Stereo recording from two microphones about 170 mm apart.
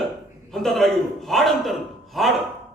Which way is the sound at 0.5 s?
Centre (ahead or behind).